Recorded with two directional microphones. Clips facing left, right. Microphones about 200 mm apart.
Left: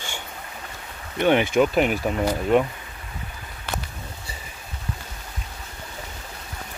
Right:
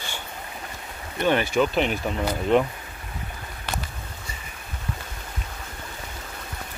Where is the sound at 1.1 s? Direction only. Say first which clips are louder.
Left 3 dB; 15° left (ahead or behind).